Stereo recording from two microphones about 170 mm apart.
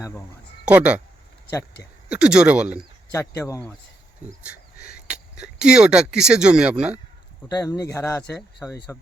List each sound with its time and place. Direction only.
0.6 s speech: 5° right (ahead or behind)
2.0 s speech: 5° right (ahead or behind)
3.2 s speech: 15° left (ahead or behind)
4.9 s speech: 5° right (ahead or behind)
7.4 s speech: 20° left (ahead or behind)